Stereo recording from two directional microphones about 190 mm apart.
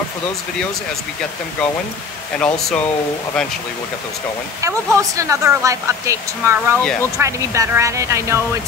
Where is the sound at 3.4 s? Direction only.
5° left (ahead or behind).